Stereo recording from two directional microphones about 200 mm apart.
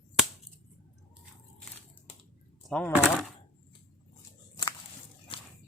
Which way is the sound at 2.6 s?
Centre (ahead or behind).